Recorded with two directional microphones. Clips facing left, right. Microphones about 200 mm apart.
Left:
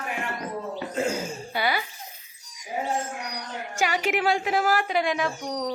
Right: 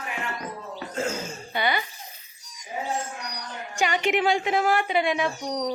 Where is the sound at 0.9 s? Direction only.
15° left (ahead or behind).